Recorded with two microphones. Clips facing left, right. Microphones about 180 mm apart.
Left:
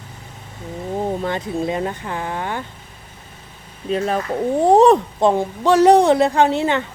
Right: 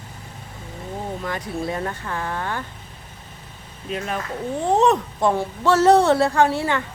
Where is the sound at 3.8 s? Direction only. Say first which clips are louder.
Left 7 dB; 35° left (ahead or behind).